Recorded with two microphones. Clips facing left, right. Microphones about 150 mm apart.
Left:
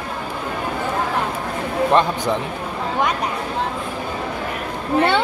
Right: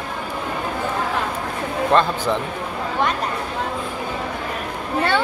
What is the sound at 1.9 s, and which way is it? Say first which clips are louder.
Speech: even; 15° left (ahead or behind).